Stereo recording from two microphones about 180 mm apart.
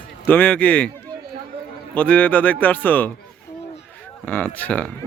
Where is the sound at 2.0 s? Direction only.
10° left (ahead or behind).